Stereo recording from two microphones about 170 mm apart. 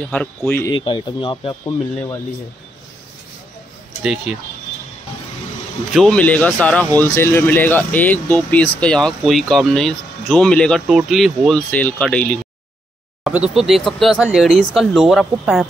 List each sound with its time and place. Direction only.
0.1 s speech: 5° left (ahead or behind)
0.7 s speech: 25° left (ahead or behind)
4.0 s speech: 5° right (ahead or behind)
5.9 s speech: 5° left (ahead or behind)